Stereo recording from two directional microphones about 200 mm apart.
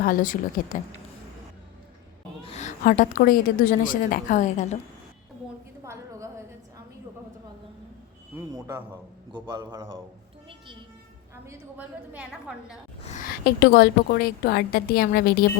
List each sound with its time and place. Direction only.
0.0 s a woman's voice: 45° left (ahead or behind)
2.4 s a woman's voice: 30° left (ahead or behind)
5.8 s a sound: 15° right (ahead or behind)
8.4 s a woman's voice: 15° right (ahead or behind)
11.4 s a woman's voice: 10° right (ahead or behind)
13.1 s a woman's voice: 40° left (ahead or behind)
13.4 s a woman's voice: 50° left (ahead or behind)